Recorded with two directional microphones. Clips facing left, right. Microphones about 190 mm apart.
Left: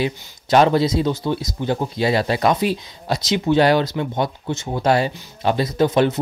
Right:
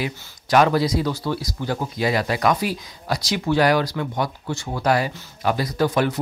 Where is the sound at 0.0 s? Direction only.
25° left (ahead or behind).